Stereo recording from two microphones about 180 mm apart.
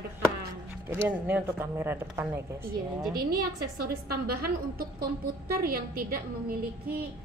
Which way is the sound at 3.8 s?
55° right (ahead or behind).